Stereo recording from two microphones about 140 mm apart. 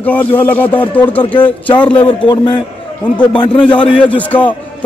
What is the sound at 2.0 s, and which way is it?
A man's voice, 35° left (ahead or behind).